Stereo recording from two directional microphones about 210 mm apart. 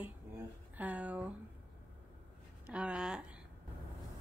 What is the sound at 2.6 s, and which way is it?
Speech, 5° right (ahead or behind).